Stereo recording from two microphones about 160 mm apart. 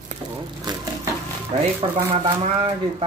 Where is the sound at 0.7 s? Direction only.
25° right (ahead or behind).